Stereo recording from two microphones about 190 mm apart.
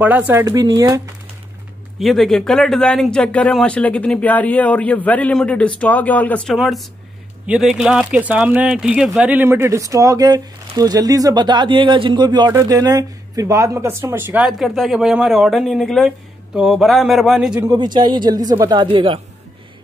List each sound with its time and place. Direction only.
0.0 s speech: 10° right (ahead or behind)
2.0 s speech: centre (ahead or behind)
17.6 s speech: 25° right (ahead or behind)